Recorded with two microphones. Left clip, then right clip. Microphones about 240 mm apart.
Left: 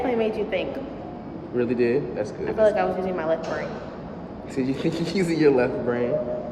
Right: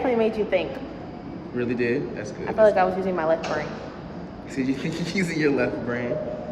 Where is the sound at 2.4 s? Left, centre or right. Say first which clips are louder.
Right 3 dB; centre.